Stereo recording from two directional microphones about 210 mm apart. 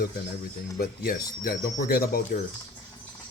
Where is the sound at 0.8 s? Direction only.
45° left (ahead or behind).